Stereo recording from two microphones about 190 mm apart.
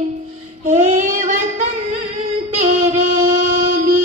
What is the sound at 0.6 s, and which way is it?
Child singing, 40° right (ahead or behind).